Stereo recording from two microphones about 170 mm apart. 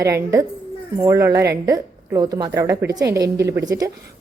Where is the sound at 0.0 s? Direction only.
15° right (ahead or behind).